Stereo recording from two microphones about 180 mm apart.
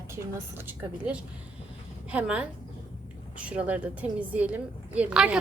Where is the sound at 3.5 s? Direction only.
10° right (ahead or behind).